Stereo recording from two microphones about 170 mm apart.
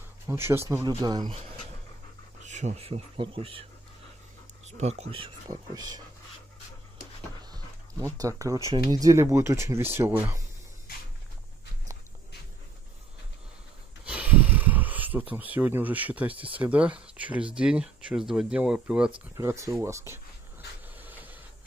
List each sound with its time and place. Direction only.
0.3 s speech: 15° right (ahead or behind)
2.4 s speech: 45° right (ahead or behind)
4.6 s speech: 40° right (ahead or behind)
5.5 s speech: 25° right (ahead or behind)
7.5 s a sound: 20° right (ahead or behind)
8.7 s speech: 25° right (ahead or behind)
14.0 s a sound: 10° right (ahead or behind)
16.5 s speech: 10° right (ahead or behind)
19.3 s speech: 15° right (ahead or behind)
20.9 s printer: 10° right (ahead or behind)